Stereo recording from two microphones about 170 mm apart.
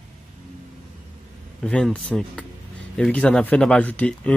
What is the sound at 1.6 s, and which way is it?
Speech, 5° left (ahead or behind).